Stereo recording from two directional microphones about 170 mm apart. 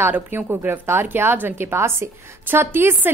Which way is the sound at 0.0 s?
10° right (ahead or behind).